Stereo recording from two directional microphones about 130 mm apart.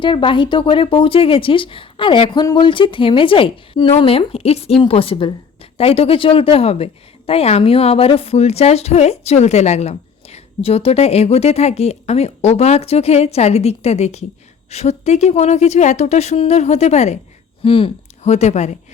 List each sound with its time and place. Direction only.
0.0 s a woman's voice: 40° left (ahead or behind); by 17.2 s 60° left (ahead or behind)
17.6 s speech: 45° left (ahead or behind); by 18.8 s 60° left (ahead or behind)